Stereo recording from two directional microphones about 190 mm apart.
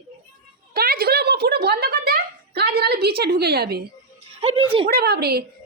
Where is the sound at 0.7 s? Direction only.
50° right (ahead or behind).